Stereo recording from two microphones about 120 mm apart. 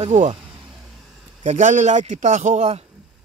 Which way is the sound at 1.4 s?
85° right.